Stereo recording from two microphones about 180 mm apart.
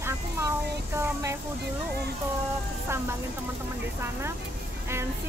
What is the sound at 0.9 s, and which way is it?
Speech, 15° right (ahead or behind).